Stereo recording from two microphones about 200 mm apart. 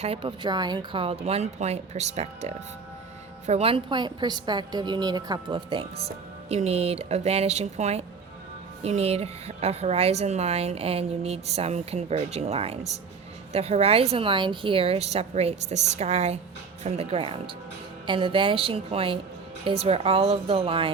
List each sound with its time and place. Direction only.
0.0 s a woman's voice: 30° right (ahead or behind)